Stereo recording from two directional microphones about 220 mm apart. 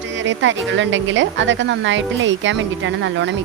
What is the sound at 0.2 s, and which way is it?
Speech, 55° right (ahead or behind).